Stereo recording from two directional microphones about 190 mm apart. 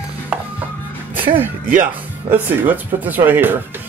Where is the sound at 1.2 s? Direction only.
10° right (ahead or behind).